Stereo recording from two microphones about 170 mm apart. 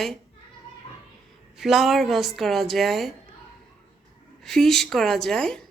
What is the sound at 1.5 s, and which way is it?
A woman's voice, centre (ahead or behind).